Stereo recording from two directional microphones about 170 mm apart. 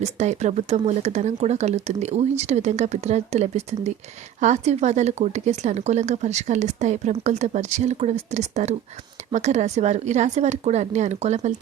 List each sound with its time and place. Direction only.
0.0 s speech: 40° right (ahead or behind)